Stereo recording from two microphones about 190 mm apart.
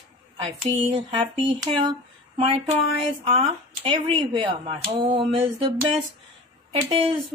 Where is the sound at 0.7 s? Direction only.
30° right (ahead or behind).